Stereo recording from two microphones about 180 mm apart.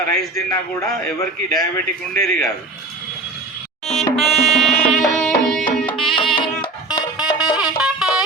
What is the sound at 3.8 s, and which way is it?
Music, 35° left (ahead or behind).